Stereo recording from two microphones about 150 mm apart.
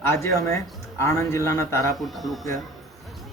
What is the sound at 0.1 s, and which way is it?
Speech, 20° left (ahead or behind).